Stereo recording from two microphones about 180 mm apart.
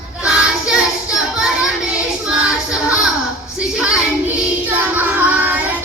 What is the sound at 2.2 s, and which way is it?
Music, 5° right (ahead or behind).